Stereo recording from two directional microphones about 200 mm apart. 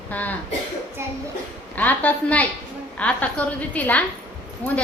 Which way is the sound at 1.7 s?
10° left (ahead or behind).